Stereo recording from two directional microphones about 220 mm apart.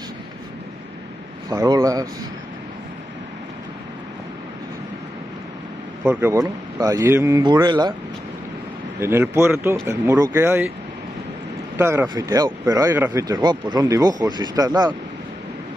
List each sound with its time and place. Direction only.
1.5 s speech: 15° right (ahead or behind)
6.0 s speech: 10° right (ahead or behind)
9.0 s speech: 10° right (ahead or behind)
11.8 s speech: 10° right (ahead or behind)